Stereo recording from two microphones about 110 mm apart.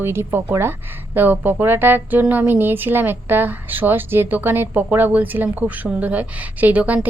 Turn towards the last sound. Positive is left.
turn(degrees=-15)  # may be behind; listen again after turning